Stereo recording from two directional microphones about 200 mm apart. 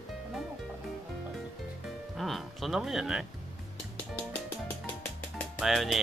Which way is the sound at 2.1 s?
Centre (ahead or behind).